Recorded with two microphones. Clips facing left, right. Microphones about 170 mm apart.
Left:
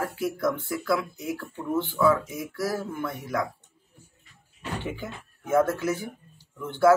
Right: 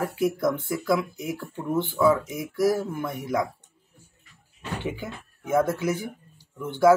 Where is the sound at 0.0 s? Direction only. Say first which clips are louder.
Right 3 dB; 15° right (ahead or behind).